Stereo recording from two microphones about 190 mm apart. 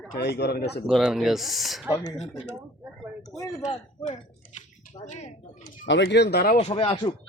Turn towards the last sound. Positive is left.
turn(degrees=25)  # may be behind; listen again after turning